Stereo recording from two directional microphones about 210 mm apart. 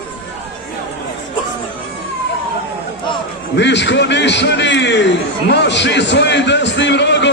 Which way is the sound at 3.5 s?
55° left (ahead or behind).